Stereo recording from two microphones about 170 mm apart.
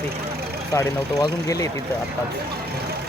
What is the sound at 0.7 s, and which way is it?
Speech, 20° left (ahead or behind).